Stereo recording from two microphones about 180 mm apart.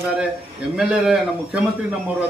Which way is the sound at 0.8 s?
5° right (ahead or behind).